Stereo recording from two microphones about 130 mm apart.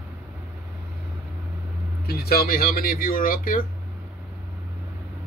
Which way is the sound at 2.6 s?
90° left.